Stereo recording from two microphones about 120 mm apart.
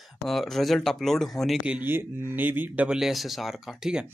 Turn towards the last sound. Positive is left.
turn(degrees=-5)  # may be behind; listen again after turning